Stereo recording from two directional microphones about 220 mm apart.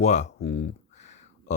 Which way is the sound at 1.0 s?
30° left (ahead or behind).